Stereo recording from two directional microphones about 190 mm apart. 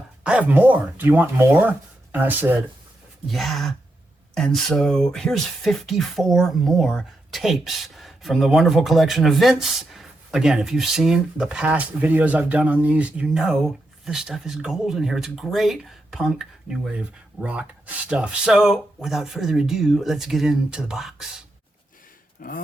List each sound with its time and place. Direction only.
0.3 s speech: 5° right (ahead or behind)
3.2 s speech: centre (ahead or behind)
22.4 s speech: 50° left (ahead or behind)